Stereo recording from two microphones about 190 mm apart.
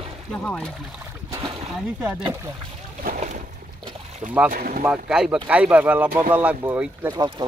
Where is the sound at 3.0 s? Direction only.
45° right (ahead or behind).